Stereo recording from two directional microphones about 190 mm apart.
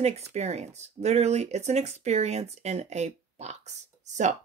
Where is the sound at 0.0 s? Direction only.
35° right (ahead or behind).